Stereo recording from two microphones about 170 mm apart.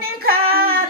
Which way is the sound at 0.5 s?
60° right (ahead or behind).